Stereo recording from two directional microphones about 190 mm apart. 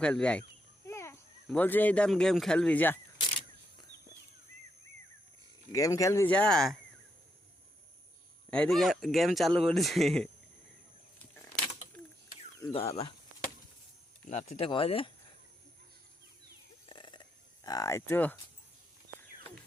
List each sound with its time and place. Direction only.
0.0 s speech: 5° left (ahead or behind)
0.9 s a sound: 15° left (ahead or behind)
1.5 s speech: 10° left (ahead or behind)
5.7 s speech: 15° left (ahead or behind)
8.4 s speech: 5° left (ahead or behind)
12.6 s speech: 30° left (ahead or behind)
14.3 s speech: 35° left (ahead or behind)
16.9 s a sound: 25° left (ahead or behind)